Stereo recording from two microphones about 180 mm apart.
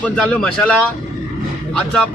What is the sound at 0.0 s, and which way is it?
Speech, 5° left (ahead or behind).